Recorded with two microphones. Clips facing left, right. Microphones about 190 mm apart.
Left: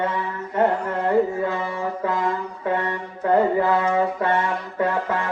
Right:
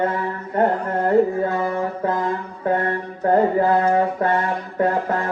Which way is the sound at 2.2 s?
40° right (ahead or behind).